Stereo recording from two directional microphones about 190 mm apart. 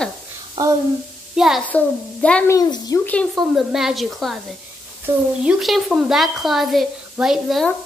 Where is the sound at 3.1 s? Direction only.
Centre (ahead or behind).